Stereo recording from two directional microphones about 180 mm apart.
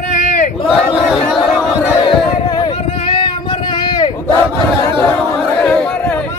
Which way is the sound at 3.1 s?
25° left (ahead or behind).